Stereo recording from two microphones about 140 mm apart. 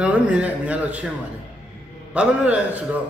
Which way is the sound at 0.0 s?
10° right (ahead or behind).